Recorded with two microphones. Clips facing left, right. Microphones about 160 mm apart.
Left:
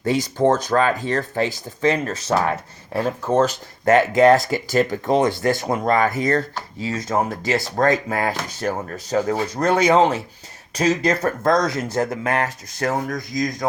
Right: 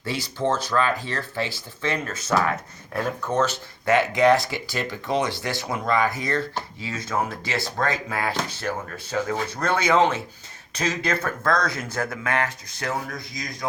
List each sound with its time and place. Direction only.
0.3 s speech: 50° left (ahead or behind); by 3.4 s 30° left (ahead or behind)
3.8 s speech: 45° left (ahead or behind)
11.9 s speech: 25° left (ahead or behind)
12.3 s speech: 40° left (ahead or behind)